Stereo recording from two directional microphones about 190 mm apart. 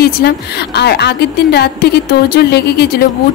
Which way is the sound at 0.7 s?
60° left (ahead or behind).